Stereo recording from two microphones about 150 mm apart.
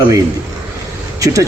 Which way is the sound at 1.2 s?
20° right (ahead or behind).